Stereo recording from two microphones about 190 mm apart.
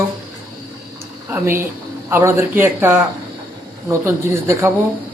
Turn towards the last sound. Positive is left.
turn(degrees=-15)  # may be behind; listen again after turning